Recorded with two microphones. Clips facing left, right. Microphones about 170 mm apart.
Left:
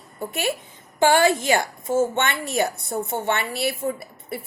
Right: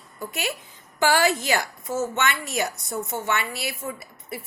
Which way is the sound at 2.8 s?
60° left (ahead or behind).